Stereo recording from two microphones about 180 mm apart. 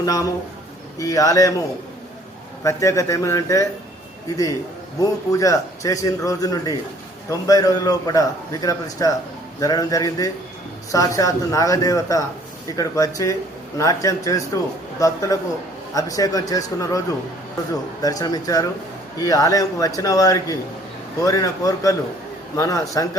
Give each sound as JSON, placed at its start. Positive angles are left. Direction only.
{"t": 0.0, "sound": "a man's voice", "side_deg": 20}
{"t": 2.6, "sound": "a man's voice", "side_deg": 15}
{"t": 18.0, "sound": "a man's voice", "side_deg": 20}